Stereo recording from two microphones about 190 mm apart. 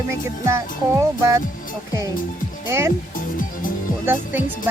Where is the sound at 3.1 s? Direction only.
45° left (ahead or behind).